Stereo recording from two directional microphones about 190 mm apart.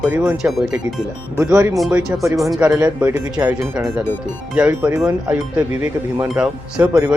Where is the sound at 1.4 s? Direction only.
15° right (ahead or behind).